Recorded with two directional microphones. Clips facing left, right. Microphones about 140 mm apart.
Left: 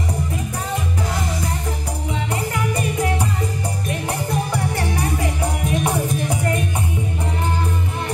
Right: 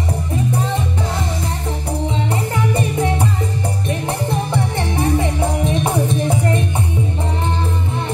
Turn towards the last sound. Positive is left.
turn(degrees=-25)  # may be behind; listen again after turning